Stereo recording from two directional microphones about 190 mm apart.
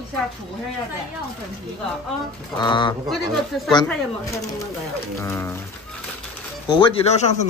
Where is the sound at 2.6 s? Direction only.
25° left (ahead or behind).